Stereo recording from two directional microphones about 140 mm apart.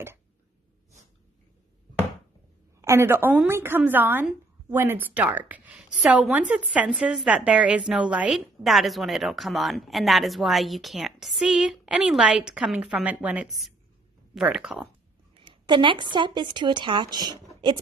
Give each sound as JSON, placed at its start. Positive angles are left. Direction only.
{"t": 2.8, "sound": "a woman's voice", "side_deg": -20}
{"t": 15.3, "sound": "speech", "side_deg": -35}